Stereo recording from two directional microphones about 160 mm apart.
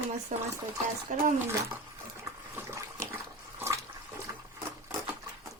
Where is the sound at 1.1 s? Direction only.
50° right (ahead or behind).